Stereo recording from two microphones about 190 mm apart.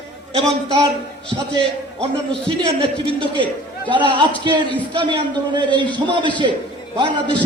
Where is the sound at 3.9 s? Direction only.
25° right (ahead or behind).